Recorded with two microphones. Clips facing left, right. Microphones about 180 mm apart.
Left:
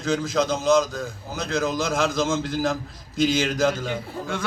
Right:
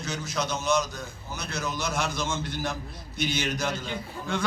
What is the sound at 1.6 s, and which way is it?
A man's voice, 90° left.